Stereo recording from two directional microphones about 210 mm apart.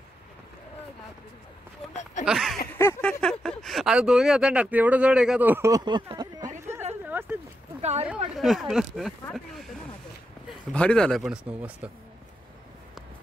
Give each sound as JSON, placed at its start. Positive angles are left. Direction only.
{"t": 2.2, "sound": "speech", "side_deg": 0}
{"t": 2.8, "sound": "speech", "side_deg": 10}
{"t": 7.1, "sound": "a sound", "side_deg": -10}
{"t": 7.8, "sound": "a sound", "side_deg": -30}
{"t": 8.4, "sound": "speech", "side_deg": 0}
{"t": 10.7, "sound": "speech", "side_deg": 5}